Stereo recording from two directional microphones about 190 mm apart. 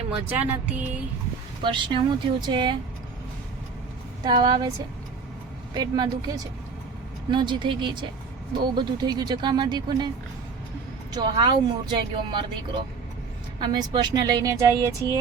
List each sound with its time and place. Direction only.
0.3 s music: 10° right (ahead or behind)
1.6 s a woman's voice: 25° right (ahead or behind)
4.2 s a woman's voice: 20° right (ahead or behind)
5.7 s a woman's voice: 20° right (ahead or behind)
11.1 s a woman's voice: 25° right (ahead or behind)
13.6 s a woman's voice: 25° right (ahead or behind)